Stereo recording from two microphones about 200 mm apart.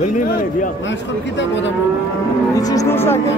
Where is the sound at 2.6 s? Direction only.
15° left (ahead or behind).